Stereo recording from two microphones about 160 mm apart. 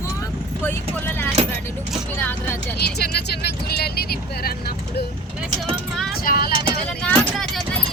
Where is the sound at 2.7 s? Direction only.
90° left.